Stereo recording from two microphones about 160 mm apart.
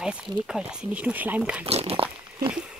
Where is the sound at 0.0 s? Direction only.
5° right (ahead or behind).